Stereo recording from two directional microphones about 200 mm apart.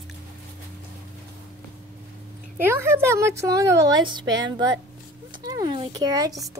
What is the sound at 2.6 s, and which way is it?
A woman's voice, 15° right (ahead or behind).